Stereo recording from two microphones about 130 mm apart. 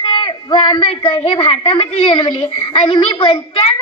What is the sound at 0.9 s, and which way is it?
A child's voice, 45° left (ahead or behind).